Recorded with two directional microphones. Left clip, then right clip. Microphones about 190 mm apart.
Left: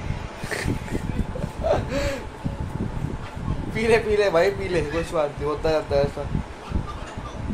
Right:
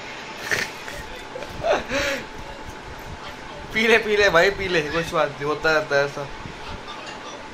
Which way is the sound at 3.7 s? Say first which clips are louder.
Right 2 dB; 10° left (ahead or behind).